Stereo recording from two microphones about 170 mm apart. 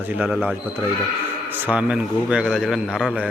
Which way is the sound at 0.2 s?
5° right (ahead or behind).